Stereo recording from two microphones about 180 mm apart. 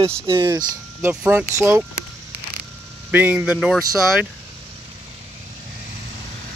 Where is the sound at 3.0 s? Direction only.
10° right (ahead or behind).